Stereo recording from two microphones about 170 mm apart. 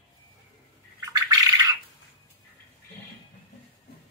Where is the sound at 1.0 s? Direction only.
20° right (ahead or behind).